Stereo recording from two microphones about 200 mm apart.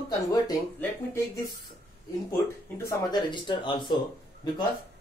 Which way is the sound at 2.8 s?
20° left (ahead or behind).